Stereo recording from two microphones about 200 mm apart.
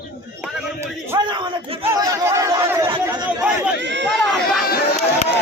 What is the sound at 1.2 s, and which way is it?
Speech, 25° right (ahead or behind).